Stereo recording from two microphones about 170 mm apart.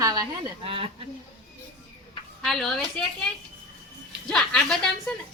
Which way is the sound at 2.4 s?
Centre (ahead or behind).